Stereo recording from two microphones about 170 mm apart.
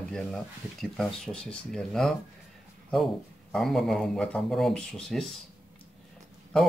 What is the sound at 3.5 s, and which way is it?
Speech, centre (ahead or behind).